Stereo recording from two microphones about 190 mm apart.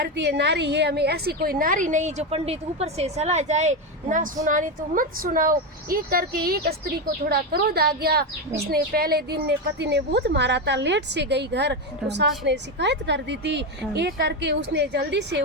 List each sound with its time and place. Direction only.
0.0 s a woman's voice: 65° right (ahead or behind)